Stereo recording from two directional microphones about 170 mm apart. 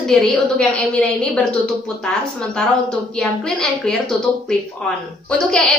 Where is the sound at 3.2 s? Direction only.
5° left (ahead or behind).